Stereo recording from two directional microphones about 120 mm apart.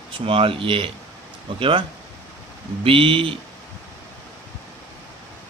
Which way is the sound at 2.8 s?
50° right (ahead or behind).